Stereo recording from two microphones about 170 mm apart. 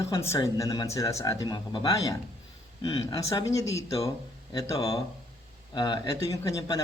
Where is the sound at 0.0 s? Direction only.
15° left (ahead or behind).